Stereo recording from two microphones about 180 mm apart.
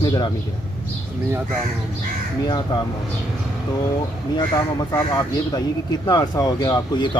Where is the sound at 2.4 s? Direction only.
25° left (ahead or behind).